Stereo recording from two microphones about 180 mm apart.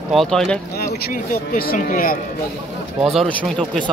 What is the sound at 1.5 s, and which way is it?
Speech, 50° left (ahead or behind).